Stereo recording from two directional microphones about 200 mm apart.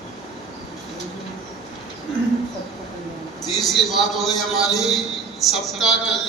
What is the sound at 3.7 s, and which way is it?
Speech, centre (ahead or behind).